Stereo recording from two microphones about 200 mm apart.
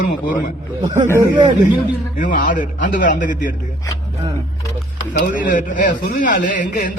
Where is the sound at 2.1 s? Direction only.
40° left (ahead or behind).